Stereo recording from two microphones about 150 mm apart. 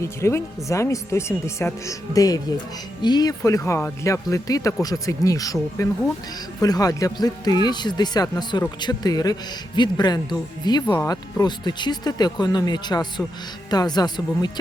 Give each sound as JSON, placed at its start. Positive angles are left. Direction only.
{"t": 0.0, "sound": "speech", "side_deg": 20}